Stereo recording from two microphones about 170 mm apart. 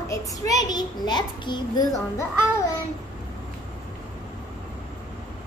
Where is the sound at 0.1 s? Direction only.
20° left (ahead or behind).